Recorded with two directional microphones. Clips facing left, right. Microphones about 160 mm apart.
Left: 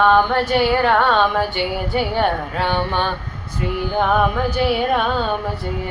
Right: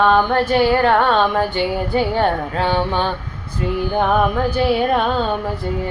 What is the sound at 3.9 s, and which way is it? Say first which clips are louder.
Music: even; 20° right (ahead or behind).